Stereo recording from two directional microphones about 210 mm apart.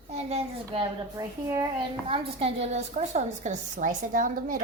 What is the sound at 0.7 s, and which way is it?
A child's voice, 15° right (ahead or behind).